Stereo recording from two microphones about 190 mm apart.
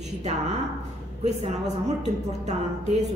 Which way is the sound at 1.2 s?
35° right (ahead or behind).